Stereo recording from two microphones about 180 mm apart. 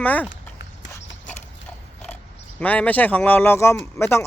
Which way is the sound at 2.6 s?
10° left (ahead or behind).